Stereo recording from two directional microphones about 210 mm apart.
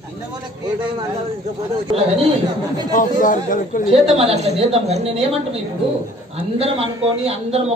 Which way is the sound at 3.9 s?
30° right (ahead or behind).